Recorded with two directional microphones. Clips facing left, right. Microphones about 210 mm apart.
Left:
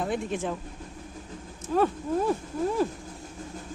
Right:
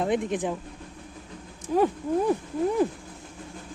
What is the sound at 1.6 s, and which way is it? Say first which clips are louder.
Speech: right 2 dB; 15° right (ahead or behind).